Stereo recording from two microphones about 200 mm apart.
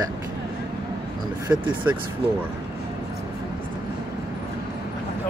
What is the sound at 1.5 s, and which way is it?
Speech, 5° right (ahead or behind).